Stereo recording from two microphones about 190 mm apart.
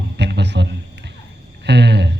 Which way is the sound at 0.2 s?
65° right (ahead or behind).